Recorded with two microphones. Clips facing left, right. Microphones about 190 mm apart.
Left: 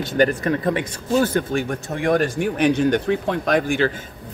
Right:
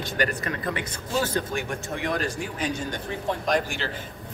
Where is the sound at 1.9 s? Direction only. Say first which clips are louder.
Left 9 dB; 50° left (ahead or behind).